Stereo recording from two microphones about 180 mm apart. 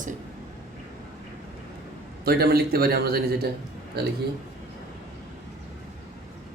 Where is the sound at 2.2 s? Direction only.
60° right (ahead or behind).